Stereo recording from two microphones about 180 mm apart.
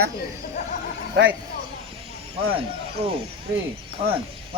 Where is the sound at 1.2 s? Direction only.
75° right (ahead or behind).